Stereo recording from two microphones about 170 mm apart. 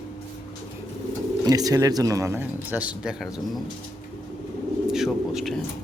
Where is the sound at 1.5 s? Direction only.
20° right (ahead or behind); by 3.4 s 5° right (ahead or behind).